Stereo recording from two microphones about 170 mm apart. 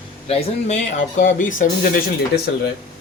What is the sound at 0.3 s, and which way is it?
Speech, 40° left (ahead or behind).